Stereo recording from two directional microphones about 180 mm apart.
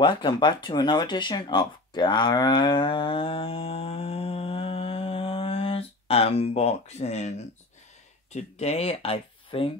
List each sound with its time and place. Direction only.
0.0 s speech: 25° left (ahead or behind)